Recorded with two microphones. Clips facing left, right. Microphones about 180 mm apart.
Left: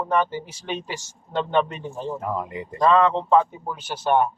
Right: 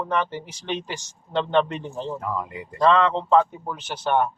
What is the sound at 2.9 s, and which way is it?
A man's voice, 5° left (ahead or behind).